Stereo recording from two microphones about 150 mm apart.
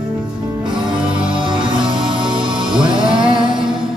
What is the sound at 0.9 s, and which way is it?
Music, 35° right (ahead or behind).